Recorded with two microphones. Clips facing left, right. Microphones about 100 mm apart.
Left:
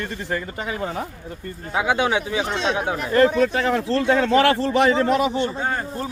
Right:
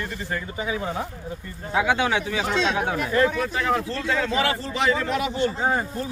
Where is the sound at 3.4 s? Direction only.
70° left (ahead or behind).